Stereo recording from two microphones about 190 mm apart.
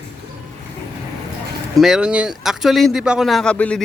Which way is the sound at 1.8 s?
5° right (ahead or behind).